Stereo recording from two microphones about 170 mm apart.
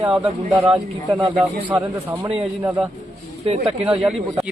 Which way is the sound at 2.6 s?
10° right (ahead or behind).